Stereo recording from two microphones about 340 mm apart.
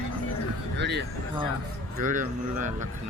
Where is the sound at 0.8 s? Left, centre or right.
Right.